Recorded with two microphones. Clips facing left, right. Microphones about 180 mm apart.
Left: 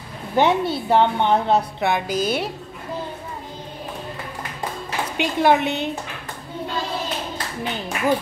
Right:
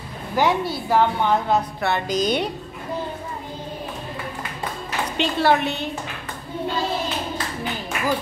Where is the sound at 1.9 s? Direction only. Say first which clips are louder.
Right 2 dB; 5° left (ahead or behind).